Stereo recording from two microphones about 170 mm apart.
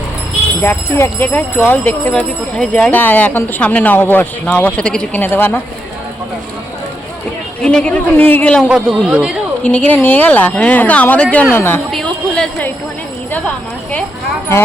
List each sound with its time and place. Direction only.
0.6 s speech: 15° left (ahead or behind)
7.6 s speech: 5° left (ahead or behind)
8.7 s speech: centre (ahead or behind)
11.9 s speech: 5° left (ahead or behind)